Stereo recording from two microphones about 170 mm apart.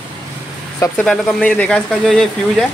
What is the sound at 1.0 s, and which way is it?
Speech, centre (ahead or behind).